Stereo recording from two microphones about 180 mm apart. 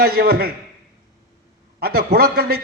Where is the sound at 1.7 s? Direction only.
60° right (ahead or behind).